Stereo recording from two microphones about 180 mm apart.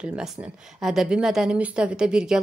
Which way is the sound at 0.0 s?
5° right (ahead or behind).